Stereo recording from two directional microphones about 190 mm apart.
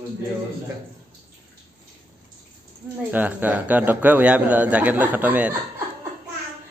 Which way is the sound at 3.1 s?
10° right (ahead or behind).